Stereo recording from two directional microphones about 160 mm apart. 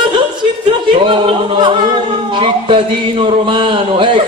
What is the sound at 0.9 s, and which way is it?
A man's voice, 35° right (ahead or behind).